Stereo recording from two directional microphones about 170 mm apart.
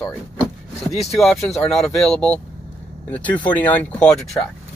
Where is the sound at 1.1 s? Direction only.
Centre (ahead or behind).